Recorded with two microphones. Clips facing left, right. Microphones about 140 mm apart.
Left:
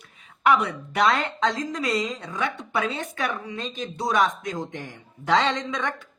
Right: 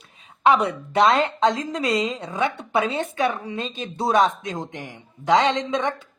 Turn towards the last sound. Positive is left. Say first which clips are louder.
# right 5 dB
turn(degrees=-20)  # may be behind; listen again after turning